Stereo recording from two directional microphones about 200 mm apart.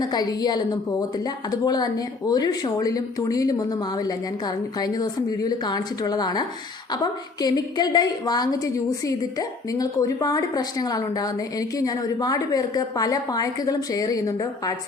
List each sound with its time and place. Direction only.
0.0 s a woman's voice: 20° left (ahead or behind)